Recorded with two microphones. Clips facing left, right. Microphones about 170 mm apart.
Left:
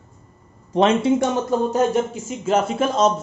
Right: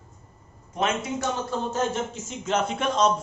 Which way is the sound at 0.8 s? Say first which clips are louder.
Left 10 dB; 30° left (ahead or behind).